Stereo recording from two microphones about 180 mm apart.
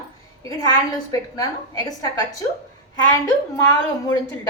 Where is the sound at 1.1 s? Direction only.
20° left (ahead or behind).